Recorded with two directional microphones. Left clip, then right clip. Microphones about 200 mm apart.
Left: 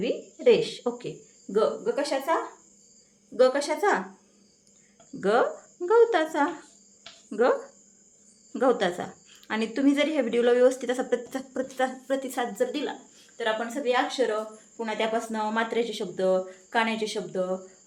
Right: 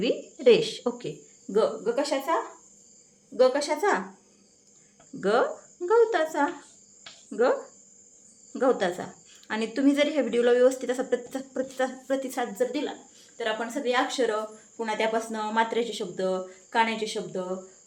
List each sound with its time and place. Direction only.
0.0 s a woman's voice: 15° right (ahead or behind); by 4.0 s 5° left (ahead or behind)
5.2 s speech: 5° left (ahead or behind)
8.5 s speech: 10° left (ahead or behind)